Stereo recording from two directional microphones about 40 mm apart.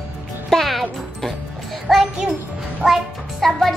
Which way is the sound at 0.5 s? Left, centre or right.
Centre.